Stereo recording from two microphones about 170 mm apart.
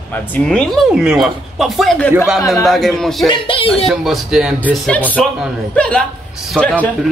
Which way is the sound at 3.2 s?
30° left (ahead or behind).